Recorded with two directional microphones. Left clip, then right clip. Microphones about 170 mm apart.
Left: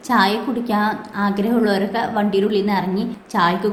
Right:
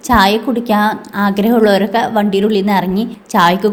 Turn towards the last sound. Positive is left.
turn(degrees=-45)  # may be behind; listen again after turning